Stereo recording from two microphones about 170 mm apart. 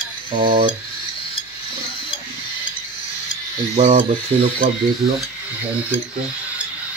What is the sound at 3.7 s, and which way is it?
Speech, 45° right (ahead or behind).